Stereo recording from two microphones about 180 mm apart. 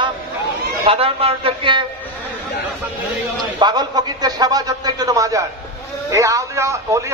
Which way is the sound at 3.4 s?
25° right (ahead or behind).